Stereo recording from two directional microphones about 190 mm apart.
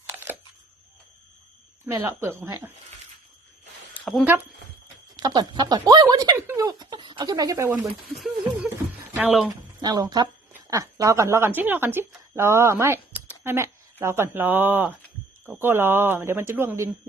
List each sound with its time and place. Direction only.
0.1 s a sound: 10° right (ahead or behind)
1.9 s speech: 15° right (ahead or behind)
3.9 s a sound: centre (ahead or behind)
5.1 s speech: 20° right (ahead or behind)
8.1 s speech: centre (ahead or behind)
9.5 s a woman's voice: 20° right (ahead or behind)